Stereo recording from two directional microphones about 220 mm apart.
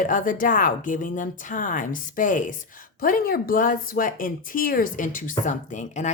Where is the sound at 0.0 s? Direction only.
35° left (ahead or behind).